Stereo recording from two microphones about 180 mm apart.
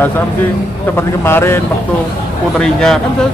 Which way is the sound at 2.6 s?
5° left (ahead or behind).